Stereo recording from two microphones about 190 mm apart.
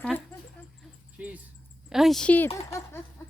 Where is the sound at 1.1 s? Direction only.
5° right (ahead or behind); by 3.0 s 10° left (ahead or behind).